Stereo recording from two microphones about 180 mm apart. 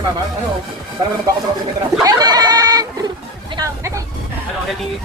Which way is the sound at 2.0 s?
20° right (ahead or behind).